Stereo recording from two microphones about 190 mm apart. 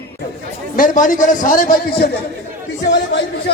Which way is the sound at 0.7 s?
45° left (ahead or behind).